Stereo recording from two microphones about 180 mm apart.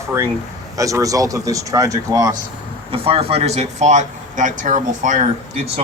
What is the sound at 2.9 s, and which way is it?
Speech, 30° right (ahead or behind).